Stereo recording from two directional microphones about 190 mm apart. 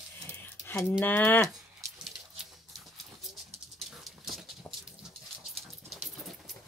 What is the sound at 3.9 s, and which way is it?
Dog, centre (ahead or behind).